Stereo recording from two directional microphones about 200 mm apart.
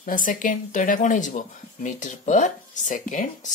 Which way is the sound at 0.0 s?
40° left (ahead or behind).